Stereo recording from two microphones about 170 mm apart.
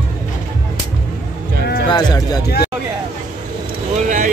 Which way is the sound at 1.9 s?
25° left (ahead or behind).